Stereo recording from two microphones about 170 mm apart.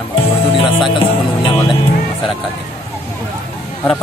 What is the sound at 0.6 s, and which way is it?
Music, 30° left (ahead or behind).